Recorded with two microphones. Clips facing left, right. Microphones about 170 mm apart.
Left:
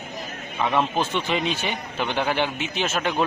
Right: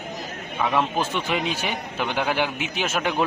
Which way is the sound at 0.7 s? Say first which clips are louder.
Left 1 dB; 5° right (ahead or behind).